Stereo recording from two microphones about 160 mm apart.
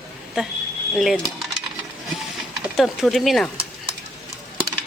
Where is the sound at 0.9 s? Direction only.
Centre (ahead or behind).